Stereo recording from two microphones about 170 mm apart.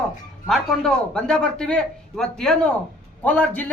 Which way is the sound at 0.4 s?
5° left (ahead or behind).